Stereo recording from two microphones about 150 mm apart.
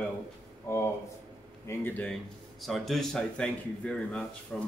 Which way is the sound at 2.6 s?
Centre (ahead or behind).